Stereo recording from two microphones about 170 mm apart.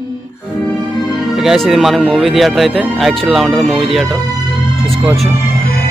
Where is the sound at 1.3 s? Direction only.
Centre (ahead or behind).